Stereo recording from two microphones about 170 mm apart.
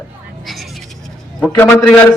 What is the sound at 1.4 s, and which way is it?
Speech, 10° left (ahead or behind).